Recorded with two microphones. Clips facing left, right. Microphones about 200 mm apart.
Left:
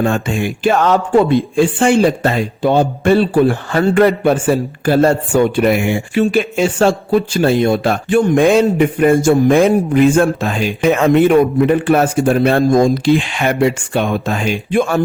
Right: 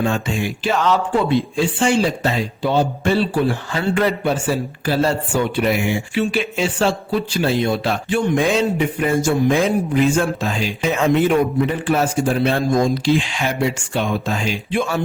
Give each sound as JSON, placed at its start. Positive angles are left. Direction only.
{"t": 0.0, "sound": "speech", "side_deg": 50}